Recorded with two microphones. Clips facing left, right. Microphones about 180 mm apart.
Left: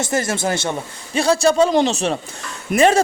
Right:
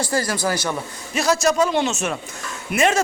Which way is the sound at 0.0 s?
25° left (ahead or behind).